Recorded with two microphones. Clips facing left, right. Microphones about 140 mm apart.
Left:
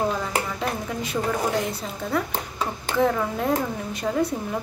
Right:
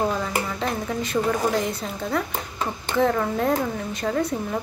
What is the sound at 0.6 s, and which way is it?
Speech, 5° left (ahead or behind).